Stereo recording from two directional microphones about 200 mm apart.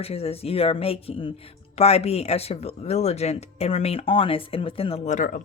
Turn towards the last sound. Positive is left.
turn(degrees=40)  # may be behind; listen again after turning